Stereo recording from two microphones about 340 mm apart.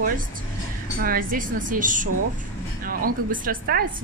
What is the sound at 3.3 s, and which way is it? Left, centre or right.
Speech, right.